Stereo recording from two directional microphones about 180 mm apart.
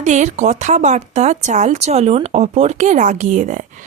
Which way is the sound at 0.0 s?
40° right (ahead or behind).